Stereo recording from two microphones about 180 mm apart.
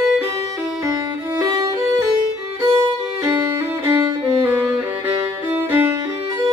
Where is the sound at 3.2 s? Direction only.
15° right (ahead or behind).